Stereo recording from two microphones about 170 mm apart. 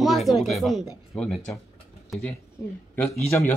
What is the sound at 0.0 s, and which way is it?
Speech, centre (ahead or behind).